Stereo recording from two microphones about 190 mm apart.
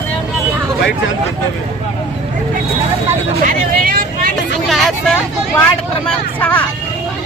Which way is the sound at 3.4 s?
45° right (ahead or behind).